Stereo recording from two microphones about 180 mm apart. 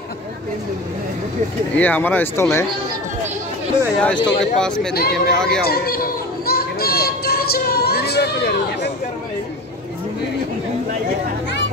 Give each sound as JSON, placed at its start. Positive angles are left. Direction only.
{"t": 1.8, "sound": "speech", "side_deg": 10}
{"t": 4.0, "sound": "speech", "side_deg": 5}
{"t": 4.7, "sound": "speech", "side_deg": 60}
{"t": 5.5, "sound": "a sound", "side_deg": 60}